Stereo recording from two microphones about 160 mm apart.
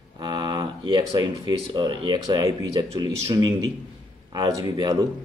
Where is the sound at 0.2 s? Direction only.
25° right (ahead or behind).